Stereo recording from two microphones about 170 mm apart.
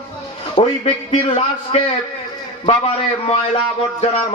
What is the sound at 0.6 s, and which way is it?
A man's voice, 35° left (ahead or behind).